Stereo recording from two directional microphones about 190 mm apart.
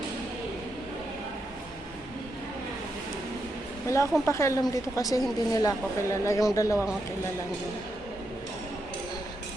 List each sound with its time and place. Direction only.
3.8 s speech: 15° left (ahead or behind)